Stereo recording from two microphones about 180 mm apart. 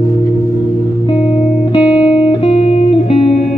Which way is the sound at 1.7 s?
25° left (ahead or behind).